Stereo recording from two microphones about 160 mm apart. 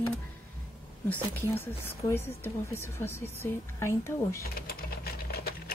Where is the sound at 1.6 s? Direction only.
15° left (ahead or behind).